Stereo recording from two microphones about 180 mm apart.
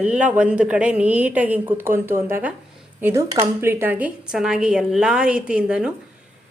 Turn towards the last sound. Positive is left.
turn(degrees=-5)  # may be behind; listen again after turning